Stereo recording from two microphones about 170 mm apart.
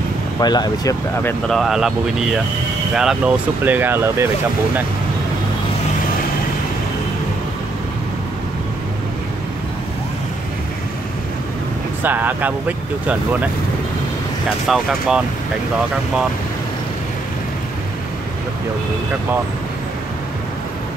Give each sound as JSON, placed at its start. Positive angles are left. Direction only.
{"t": 0.4, "sound": "speech", "side_deg": 25}
{"t": 1.5, "sound": "speech", "side_deg": 0}
{"t": 12.0, "sound": "speech", "side_deg": -10}
{"t": 14.7, "sound": "speech", "side_deg": -5}